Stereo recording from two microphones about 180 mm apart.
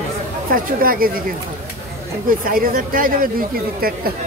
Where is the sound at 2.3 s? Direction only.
50° right (ahead or behind).